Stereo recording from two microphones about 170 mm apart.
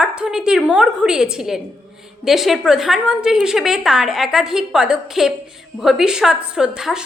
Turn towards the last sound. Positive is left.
turn(degrees=-5)  # may be behind; listen again after turning